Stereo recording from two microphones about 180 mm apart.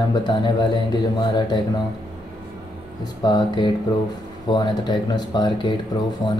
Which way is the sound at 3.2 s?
25° left (ahead or behind).